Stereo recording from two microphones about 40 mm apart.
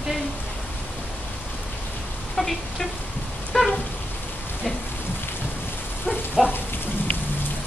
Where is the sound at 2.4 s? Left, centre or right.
Centre.